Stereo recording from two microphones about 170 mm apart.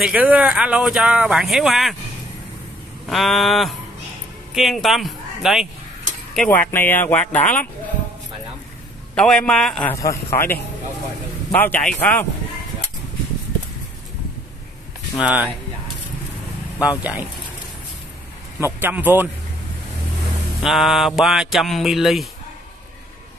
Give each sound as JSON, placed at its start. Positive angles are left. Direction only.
{"t": 0.0, "sound": "speech", "side_deg": -10}
{"t": 3.1, "sound": "speech", "side_deg": 0}
{"t": 9.1, "sound": "speech", "side_deg": 5}
{"t": 9.9, "sound": "speech", "side_deg": 15}
{"t": 15.1, "sound": "a man's voice", "side_deg": -10}
{"t": 17.0, "sound": "a man's voice", "side_deg": -10}
{"t": 18.6, "sound": "a man's voice", "side_deg": -10}
{"t": 20.6, "sound": "speech", "side_deg": 0}